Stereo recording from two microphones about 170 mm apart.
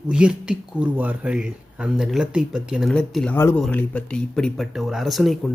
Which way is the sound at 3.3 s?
15° left (ahead or behind).